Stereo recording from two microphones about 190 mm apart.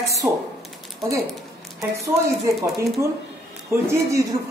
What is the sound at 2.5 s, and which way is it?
Speech, 15° right (ahead or behind).